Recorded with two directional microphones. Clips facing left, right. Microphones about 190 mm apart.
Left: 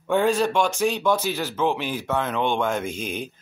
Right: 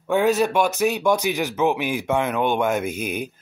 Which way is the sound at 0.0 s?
10° right (ahead or behind).